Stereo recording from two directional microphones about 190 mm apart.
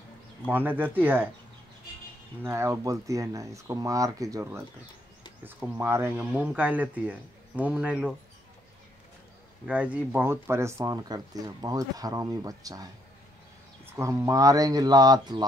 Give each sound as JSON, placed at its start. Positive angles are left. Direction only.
{"t": 0.5, "sound": "speech", "side_deg": -10}
{"t": 2.4, "sound": "speech", "side_deg": -15}
{"t": 9.7, "sound": "speech", "side_deg": -5}
{"t": 13.9, "sound": "speech", "side_deg": -15}